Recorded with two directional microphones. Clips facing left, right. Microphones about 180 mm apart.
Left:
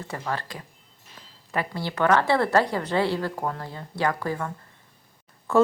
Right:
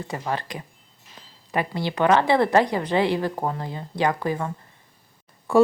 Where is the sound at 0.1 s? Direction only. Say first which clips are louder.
Right 2 dB; 15° right (ahead or behind).